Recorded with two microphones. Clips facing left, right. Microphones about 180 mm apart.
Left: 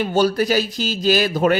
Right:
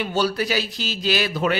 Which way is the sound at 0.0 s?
45° left (ahead or behind).